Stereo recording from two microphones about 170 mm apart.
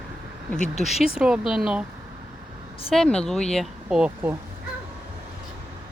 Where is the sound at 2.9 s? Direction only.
5° left (ahead or behind).